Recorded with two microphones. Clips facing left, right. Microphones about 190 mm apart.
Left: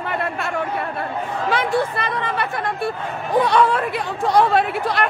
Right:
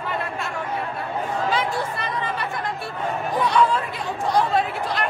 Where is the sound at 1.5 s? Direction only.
65° left (ahead or behind).